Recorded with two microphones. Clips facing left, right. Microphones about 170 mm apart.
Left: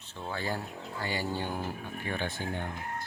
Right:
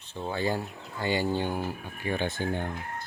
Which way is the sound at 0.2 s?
20° right (ahead or behind).